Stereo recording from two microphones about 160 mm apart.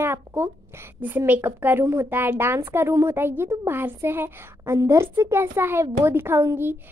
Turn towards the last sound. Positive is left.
turn(degrees=-15)  # may be behind; listen again after turning